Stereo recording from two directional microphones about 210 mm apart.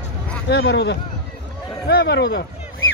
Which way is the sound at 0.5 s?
55° left (ahead or behind).